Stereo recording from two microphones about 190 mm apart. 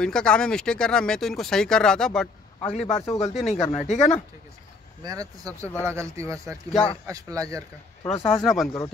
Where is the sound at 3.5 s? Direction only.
35° left (ahead or behind).